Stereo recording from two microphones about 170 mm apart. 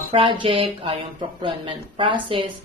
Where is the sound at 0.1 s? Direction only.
30° right (ahead or behind).